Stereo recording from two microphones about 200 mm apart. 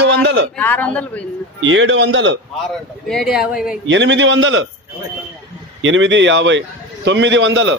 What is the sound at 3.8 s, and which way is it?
Speech, 65° right (ahead or behind).